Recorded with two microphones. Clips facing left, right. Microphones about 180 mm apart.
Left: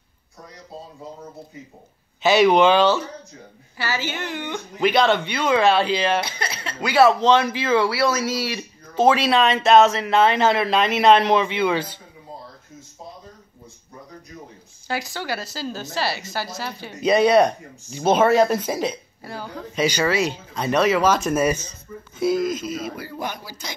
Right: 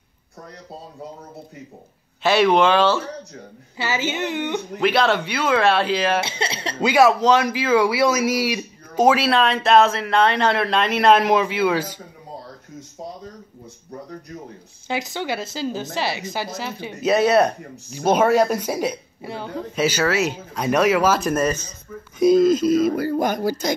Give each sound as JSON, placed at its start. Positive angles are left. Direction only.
{"t": 2.2, "sound": "speech", "side_deg": 0}
{"t": 3.7, "sound": "a woman's voice", "side_deg": -20}
{"t": 4.7, "sound": "speech", "side_deg": 0}
{"t": 6.2, "sound": "speech", "side_deg": -25}
{"t": 6.9, "sound": "a man's voice", "side_deg": -10}
{"t": 14.9, "sound": "a woman's voice", "side_deg": -20}
{"t": 17.0, "sound": "a man's voice", "side_deg": -5}
{"t": 19.2, "sound": "a woman's voice", "side_deg": -25}
{"t": 19.7, "sound": "a man's voice", "side_deg": -5}
{"t": 21.4, "sound": "speech", "side_deg": 10}
{"t": 22.2, "sound": "speech", "side_deg": -25}